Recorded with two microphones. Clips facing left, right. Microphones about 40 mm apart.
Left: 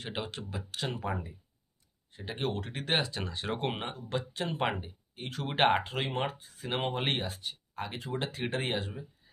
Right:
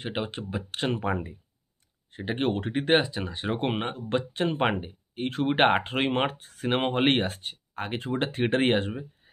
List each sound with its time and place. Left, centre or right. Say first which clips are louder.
0.0 s speech: right 6 dB; right
3.1 s speech: right 5 dB; centre; by 9.3 s right